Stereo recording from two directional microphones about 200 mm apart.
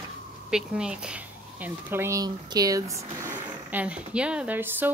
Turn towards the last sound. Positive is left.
turn(degrees=-10)  # may be behind; listen again after turning